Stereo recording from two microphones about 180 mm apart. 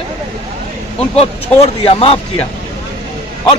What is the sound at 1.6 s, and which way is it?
Speech, 35° left (ahead or behind).